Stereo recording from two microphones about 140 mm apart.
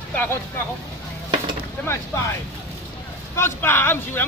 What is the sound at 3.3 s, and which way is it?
Speech, 15° left (ahead or behind).